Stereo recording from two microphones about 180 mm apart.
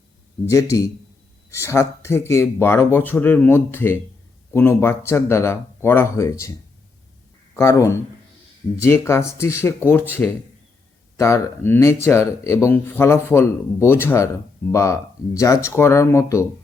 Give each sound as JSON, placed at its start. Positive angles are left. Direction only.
{"t": 0.4, "sound": "speech", "side_deg": 15}
{"t": 7.5, "sound": "speech", "side_deg": 15}